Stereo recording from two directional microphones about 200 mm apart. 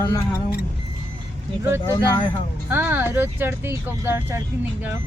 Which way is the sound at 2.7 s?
10° right (ahead or behind).